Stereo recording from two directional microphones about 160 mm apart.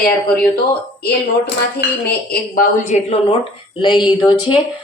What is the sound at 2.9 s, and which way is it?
Speech, 45° left (ahead or behind).